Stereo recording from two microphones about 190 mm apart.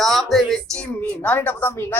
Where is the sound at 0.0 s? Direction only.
Centre (ahead or behind).